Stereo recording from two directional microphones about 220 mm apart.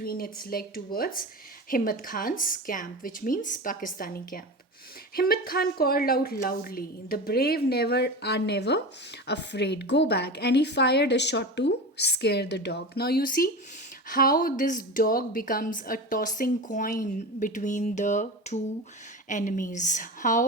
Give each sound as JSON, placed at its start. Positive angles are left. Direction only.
{"t": 0.0, "sound": "a woman's voice", "side_deg": 45}